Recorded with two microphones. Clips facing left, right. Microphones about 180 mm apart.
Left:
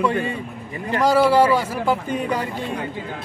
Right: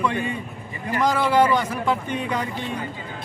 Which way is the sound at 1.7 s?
35° left (ahead or behind).